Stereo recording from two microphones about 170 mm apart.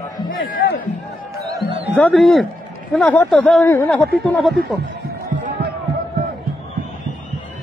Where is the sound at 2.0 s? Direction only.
5° left (ahead or behind).